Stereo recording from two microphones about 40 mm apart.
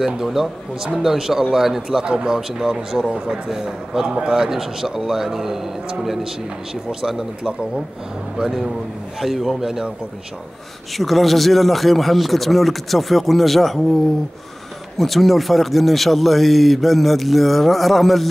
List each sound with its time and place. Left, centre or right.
0.0 s a man's voice: centre
4.5 s a man's voice: centre
11.0 s speech: centre
15.0 s speech: centre